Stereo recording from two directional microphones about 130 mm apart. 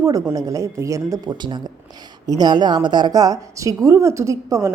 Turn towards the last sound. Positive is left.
turn(degrees=-25)  # may be behind; listen again after turning